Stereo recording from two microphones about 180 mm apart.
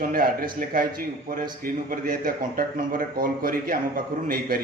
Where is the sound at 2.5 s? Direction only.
50° right (ahead or behind).